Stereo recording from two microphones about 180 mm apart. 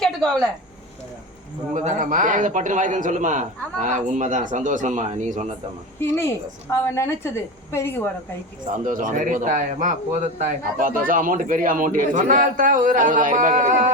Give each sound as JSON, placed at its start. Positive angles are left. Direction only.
{"t": 0.0, "sound": "a sound", "side_deg": 0}
{"t": 1.7, "sound": "speech", "side_deg": -45}
{"t": 6.0, "sound": "a woman's voice", "side_deg": 15}
{"t": 8.7, "sound": "speech", "side_deg": -45}